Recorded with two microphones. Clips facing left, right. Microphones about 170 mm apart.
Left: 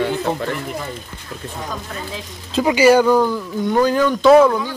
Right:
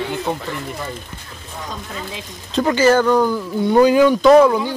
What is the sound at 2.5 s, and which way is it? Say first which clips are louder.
Speech: left 2 dB; 10° left (ahead or behind).